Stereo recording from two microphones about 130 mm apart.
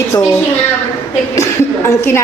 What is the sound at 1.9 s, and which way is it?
Speech, 20° left (ahead or behind).